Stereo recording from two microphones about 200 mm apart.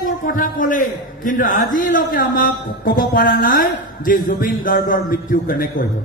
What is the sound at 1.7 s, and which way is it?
A man's voice, 40° left (ahead or behind).